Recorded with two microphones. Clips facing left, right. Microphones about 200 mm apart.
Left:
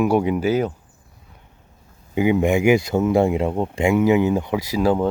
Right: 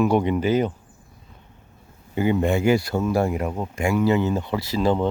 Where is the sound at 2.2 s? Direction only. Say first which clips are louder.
Left 3 dB; 15° left (ahead or behind).